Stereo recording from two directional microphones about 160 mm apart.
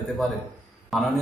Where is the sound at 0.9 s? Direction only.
Centre (ahead or behind).